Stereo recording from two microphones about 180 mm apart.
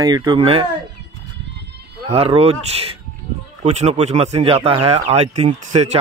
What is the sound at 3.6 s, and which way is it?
Speech, 40° right (ahead or behind).